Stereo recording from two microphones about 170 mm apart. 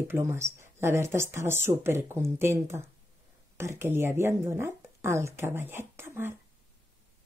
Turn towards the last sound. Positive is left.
turn(degrees=-15)  # may be behind; listen again after turning